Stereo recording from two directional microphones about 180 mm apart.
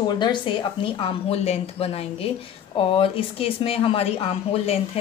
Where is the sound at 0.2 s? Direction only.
25° left (ahead or behind).